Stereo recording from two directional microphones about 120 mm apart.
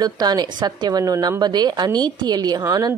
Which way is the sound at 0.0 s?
35° right (ahead or behind).